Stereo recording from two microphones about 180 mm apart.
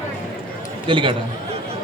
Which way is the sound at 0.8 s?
30° right (ahead or behind).